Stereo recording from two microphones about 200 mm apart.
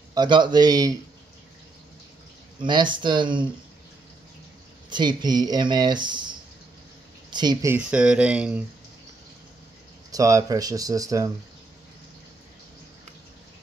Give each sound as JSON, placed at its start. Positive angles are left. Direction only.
{"t": 0.1, "sound": "speech", "side_deg": -20}
{"t": 2.6, "sound": "speech", "side_deg": -25}
{"t": 4.8, "sound": "speech", "side_deg": -20}
{"t": 7.7, "sound": "speech", "side_deg": -5}
{"t": 10.1, "sound": "speech", "side_deg": -15}